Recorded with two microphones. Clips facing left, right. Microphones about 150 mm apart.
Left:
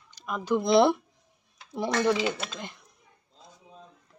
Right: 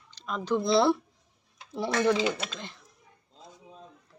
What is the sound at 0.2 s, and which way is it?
Speech, 10° left (ahead or behind).